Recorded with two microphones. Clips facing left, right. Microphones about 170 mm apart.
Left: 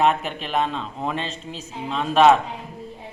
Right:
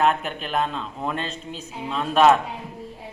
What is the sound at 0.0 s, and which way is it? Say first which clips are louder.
A man's voice: left 1 dB; centre (ahead or behind).